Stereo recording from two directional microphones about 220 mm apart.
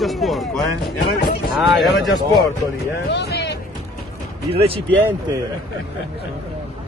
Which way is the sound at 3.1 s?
50° left (ahead or behind).